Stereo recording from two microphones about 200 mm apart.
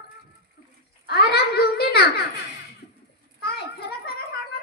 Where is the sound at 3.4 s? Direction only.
50° left (ahead or behind).